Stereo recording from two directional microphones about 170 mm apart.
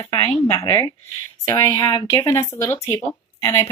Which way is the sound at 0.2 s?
20° left (ahead or behind).